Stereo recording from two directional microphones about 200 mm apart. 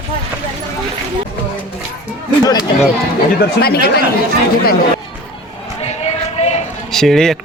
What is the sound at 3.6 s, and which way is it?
Speech, 50° left (ahead or behind).